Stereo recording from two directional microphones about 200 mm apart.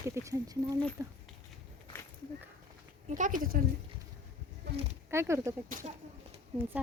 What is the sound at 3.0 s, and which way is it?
Speech, 40° right (ahead or behind).